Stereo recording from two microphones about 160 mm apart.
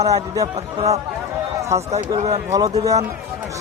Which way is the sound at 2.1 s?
25° right (ahead or behind).